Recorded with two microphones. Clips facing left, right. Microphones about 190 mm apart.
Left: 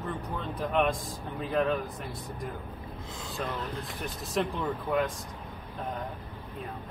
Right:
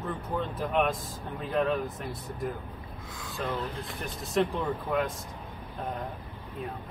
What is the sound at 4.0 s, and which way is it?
Speech, centre (ahead or behind).